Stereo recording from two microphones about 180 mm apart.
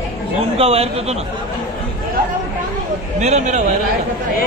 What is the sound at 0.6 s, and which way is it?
Speech, 35° right (ahead or behind).